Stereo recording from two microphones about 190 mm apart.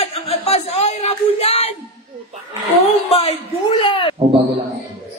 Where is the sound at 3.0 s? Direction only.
30° left (ahead or behind).